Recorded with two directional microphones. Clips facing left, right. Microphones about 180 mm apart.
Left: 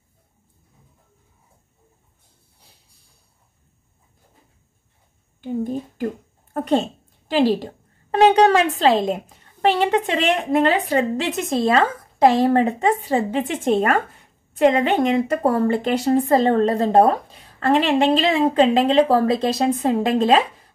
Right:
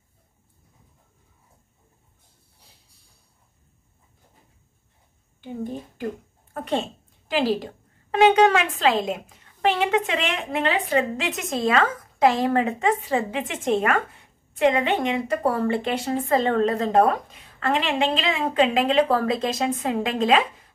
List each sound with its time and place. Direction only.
5.4 s a woman's voice: 45° left (ahead or behind)